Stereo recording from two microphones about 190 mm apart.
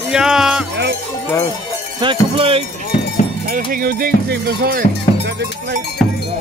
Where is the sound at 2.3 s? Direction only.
30° right (ahead or behind).